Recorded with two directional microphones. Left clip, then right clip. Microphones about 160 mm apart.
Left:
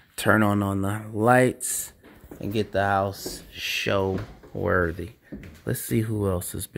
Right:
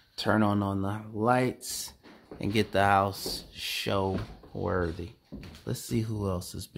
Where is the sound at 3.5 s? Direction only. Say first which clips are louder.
Left 8 dB; centre (ahead or behind).